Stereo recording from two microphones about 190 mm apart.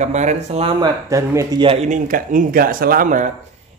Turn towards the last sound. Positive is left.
turn(degrees=-45)  # may be behind; listen again after turning